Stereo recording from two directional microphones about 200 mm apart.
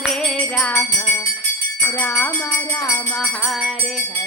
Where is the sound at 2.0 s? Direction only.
10° left (ahead or behind).